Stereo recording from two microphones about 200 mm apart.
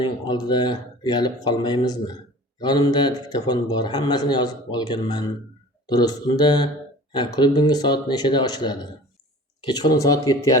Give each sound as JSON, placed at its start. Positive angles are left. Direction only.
{"t": 0.0, "sound": "speech", "side_deg": 20}